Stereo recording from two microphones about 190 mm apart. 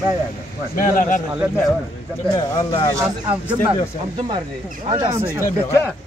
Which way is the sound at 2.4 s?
25° left (ahead or behind).